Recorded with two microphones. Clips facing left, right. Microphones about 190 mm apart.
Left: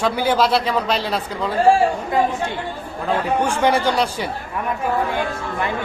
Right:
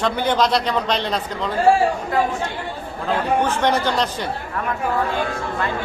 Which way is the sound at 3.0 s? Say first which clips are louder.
Even; 10° left (ahead or behind).